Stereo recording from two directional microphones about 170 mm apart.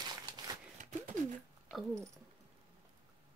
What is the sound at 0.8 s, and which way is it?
Bird, 50° right (ahead or behind).